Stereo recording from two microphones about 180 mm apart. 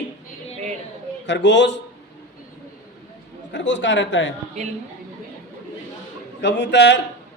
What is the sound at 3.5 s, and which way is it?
Speech, 90° left.